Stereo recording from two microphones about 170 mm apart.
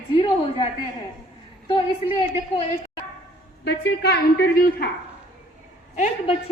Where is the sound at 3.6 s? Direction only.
80° left.